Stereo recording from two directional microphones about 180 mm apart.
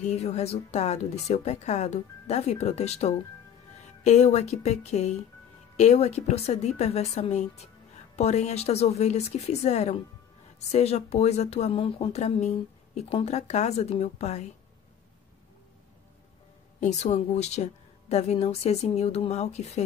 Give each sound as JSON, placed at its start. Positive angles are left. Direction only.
{"t": 0.0, "sound": "speech", "side_deg": 40}
{"t": 16.8, "sound": "speech", "side_deg": 40}